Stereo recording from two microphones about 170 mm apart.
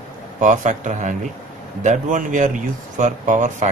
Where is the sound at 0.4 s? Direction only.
45° right (ahead or behind).